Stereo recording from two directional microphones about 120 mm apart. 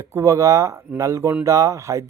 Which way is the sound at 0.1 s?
25° right (ahead or behind).